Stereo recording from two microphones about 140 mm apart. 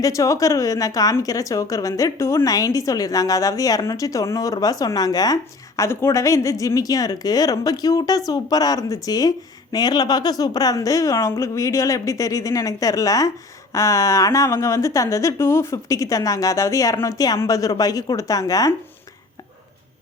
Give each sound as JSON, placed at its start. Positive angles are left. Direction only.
{"t": 0.0, "sound": "a woman's voice", "side_deg": 25}